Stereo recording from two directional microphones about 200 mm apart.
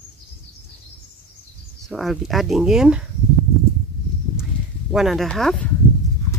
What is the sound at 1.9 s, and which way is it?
Speech, centre (ahead or behind).